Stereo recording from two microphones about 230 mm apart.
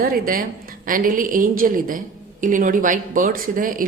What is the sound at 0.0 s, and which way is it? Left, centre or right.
Speech, right.